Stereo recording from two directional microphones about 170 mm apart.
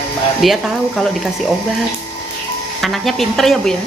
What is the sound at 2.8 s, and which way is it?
Music, centre (ahead or behind).